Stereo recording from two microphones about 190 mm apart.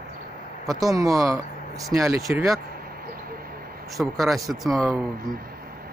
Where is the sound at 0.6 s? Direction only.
20° right (ahead or behind).